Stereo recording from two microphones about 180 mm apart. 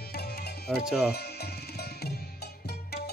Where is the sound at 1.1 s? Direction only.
60° left (ahead or behind).